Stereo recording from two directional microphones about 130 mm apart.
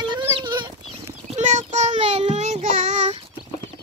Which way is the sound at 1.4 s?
65° right (ahead or behind).